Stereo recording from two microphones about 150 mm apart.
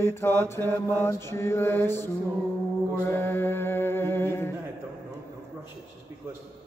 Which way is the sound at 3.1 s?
15° left (ahead or behind).